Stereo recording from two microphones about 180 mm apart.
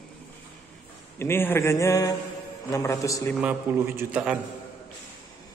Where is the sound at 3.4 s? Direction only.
10° right (ahead or behind).